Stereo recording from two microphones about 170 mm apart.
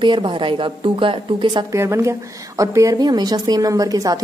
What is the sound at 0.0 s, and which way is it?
A woman's voice, 30° right (ahead or behind).